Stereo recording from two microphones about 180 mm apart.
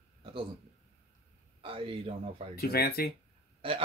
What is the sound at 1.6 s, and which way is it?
Speech, 30° right (ahead or behind).